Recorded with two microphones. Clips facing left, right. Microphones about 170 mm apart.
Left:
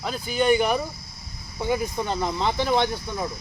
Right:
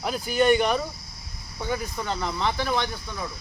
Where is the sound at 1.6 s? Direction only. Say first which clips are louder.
Left 4 dB; 20° left (ahead or behind).